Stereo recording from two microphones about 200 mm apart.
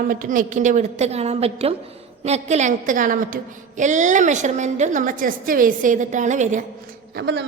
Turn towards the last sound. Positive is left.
turn(degrees=-60)  # may be behind; listen again after turning